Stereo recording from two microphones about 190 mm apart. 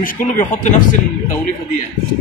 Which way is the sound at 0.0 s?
45° left (ahead or behind).